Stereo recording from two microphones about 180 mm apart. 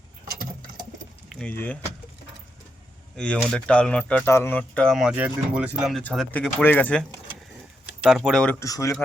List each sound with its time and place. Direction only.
0.3 s patter: 50° right (ahead or behind)
1.3 s speech: 5° left (ahead or behind)
3.2 s speech: 5° left (ahead or behind)
6.0 s speech: 10° left (ahead or behind)
8.0 s speech: centre (ahead or behind)
8.5 s speech: 20° left (ahead or behind)